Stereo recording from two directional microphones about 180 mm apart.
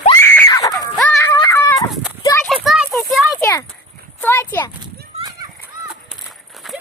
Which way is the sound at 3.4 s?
15° left (ahead or behind).